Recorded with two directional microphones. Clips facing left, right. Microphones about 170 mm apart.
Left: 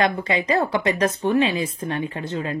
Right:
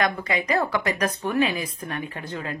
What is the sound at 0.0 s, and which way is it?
Speech, 25° left (ahead or behind).